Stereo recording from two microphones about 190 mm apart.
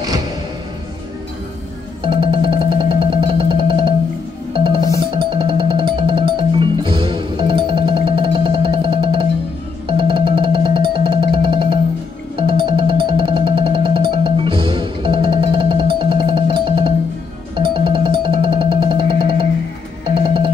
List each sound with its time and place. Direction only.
2.0 s music: 25° right (ahead or behind)
5.1 s music: 25° right (ahead or behind)